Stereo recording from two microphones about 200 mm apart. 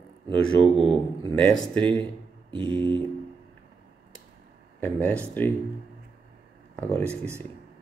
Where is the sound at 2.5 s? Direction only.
25° right (ahead or behind).